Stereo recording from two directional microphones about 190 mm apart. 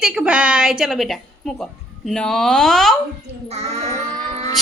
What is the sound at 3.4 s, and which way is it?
Child singing, 35° right (ahead or behind).